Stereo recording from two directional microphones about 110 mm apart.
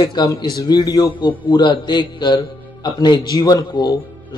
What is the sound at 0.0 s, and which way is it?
A man's voice, 40° left (ahead or behind).